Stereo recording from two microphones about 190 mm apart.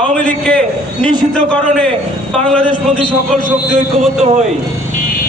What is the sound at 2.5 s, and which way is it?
Speech, 5° left (ahead or behind).